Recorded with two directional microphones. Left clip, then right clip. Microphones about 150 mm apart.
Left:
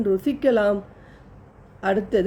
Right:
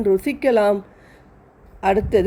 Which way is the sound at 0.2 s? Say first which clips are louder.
Right 3 dB; 25° right (ahead or behind).